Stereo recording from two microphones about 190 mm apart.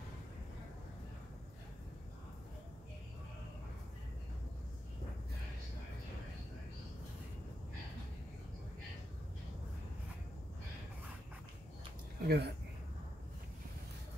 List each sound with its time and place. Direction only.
12.2 s speech: 55° right (ahead or behind)